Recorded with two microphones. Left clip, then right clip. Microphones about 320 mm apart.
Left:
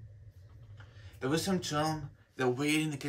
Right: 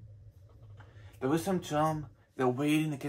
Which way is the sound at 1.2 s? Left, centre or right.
Centre.